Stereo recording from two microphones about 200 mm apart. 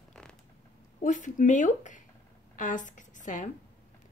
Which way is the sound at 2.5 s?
40° left (ahead or behind).